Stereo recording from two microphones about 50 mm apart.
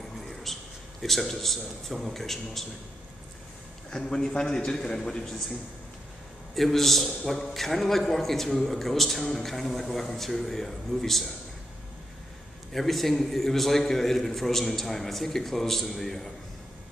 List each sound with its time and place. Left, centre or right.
0.3 s a sound: centre
1.0 s a man's voice: centre
3.9 s a man's voice: centre
6.5 s a man's voice: centre
12.7 s a man's voice: centre